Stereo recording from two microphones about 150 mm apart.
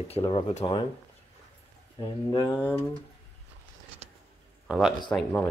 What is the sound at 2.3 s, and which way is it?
Speech, 25° left (ahead or behind).